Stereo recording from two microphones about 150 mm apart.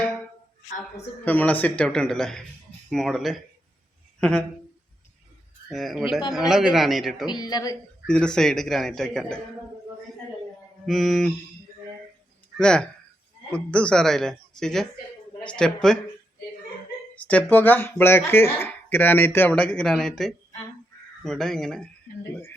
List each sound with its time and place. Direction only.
1.2 s a man's voice: 10° left (ahead or behind)
5.6 s a man's voice: centre (ahead or behind)
7.3 s speech: 25° left (ahead or behind)
8.0 s a man's voice: 5° left (ahead or behind)
10.8 s a man's voice: centre (ahead or behind)
12.5 s a man's voice: 5° left (ahead or behind)
17.2 s a man's voice: 10° left (ahead or behind)